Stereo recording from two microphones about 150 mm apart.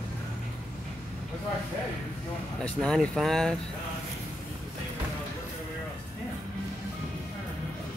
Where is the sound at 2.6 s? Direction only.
5° left (ahead or behind).